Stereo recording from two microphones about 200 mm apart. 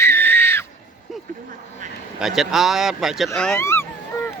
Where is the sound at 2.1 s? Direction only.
Centre (ahead or behind).